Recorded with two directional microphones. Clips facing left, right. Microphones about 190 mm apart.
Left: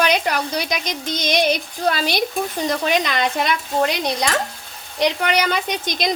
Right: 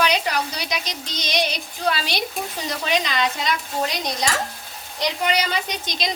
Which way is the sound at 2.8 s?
50° left (ahead or behind).